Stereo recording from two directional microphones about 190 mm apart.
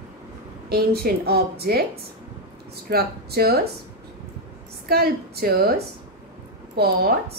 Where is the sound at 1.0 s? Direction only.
55° right (ahead or behind).